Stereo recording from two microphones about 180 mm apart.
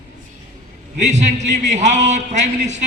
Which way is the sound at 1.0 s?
40° right (ahead or behind).